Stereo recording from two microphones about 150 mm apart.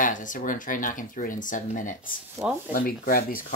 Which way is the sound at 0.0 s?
60° left (ahead or behind).